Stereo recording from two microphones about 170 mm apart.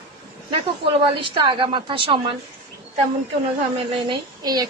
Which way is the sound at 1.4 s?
30° right (ahead or behind).